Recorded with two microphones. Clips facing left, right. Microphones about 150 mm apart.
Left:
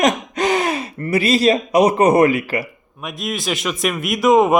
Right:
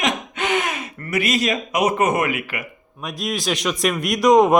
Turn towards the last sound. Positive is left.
turn(degrees=5)  # may be behind; listen again after turning